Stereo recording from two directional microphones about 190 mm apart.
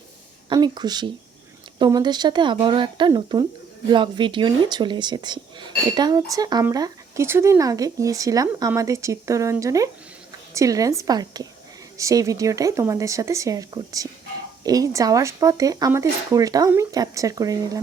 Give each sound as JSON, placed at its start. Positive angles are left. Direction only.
{"t": 0.4, "sound": "speech", "side_deg": -20}